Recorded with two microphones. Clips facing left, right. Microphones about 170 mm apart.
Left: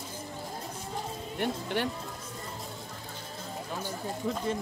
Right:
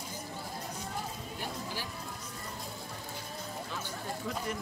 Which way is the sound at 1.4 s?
65° left (ahead or behind).